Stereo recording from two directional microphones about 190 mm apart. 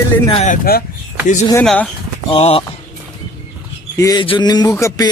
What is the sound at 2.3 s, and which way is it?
Speech, 30° left (ahead or behind).